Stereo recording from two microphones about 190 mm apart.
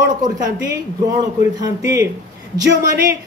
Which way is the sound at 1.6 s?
15° right (ahead or behind).